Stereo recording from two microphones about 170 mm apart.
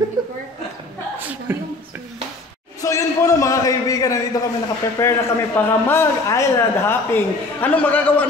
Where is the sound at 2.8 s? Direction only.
20° left (ahead or behind).